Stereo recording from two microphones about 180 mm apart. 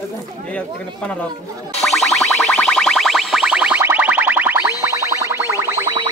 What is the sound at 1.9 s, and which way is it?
Music, centre (ahead or behind).